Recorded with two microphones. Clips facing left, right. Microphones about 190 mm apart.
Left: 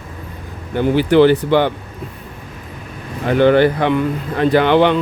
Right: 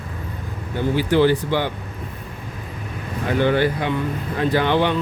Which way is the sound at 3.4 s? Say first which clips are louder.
Left 8 dB; 70° left (ahead or behind).